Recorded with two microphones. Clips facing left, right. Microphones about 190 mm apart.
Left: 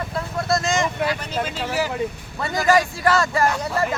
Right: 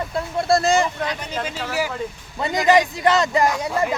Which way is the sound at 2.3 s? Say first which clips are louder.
Right 2 dB; 20° right (ahead or behind).